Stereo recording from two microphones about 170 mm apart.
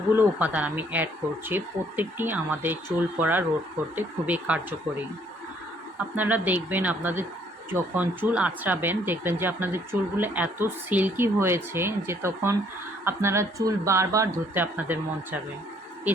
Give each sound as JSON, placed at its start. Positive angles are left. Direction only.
{"t": 0.2, "sound": "speech", "side_deg": -10}
{"t": 6.1, "sound": "speech", "side_deg": -10}